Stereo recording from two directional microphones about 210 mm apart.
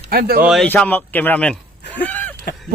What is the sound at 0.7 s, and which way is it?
Speech, 10° left (ahead or behind).